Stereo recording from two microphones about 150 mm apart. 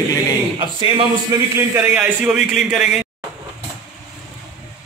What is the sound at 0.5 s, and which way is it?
Speech, 30° right (ahead or behind).